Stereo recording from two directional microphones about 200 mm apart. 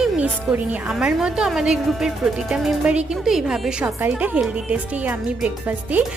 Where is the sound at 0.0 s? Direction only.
5° right (ahead or behind).